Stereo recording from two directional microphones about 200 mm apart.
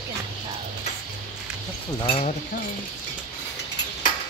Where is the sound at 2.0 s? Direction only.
30° left (ahead or behind).